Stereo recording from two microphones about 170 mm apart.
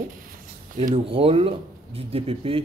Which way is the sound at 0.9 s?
35° right (ahead or behind).